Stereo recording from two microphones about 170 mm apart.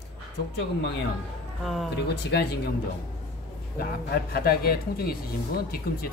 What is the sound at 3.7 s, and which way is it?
Speech, 60° left (ahead or behind).